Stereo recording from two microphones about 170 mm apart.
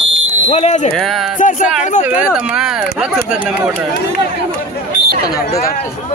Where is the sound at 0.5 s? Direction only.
40° left (ahead or behind).